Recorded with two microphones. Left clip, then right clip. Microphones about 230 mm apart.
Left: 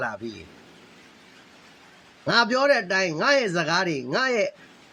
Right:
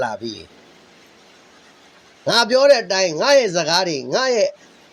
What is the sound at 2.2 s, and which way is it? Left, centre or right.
A man's voice, centre.